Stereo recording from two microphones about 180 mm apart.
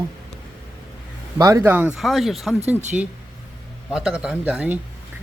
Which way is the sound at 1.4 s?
15° right (ahead or behind).